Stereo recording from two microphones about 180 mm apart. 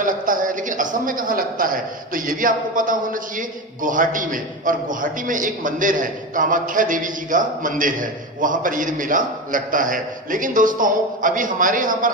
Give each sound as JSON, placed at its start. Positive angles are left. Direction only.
{"t": 0.0, "sound": "a man's voice", "side_deg": -50}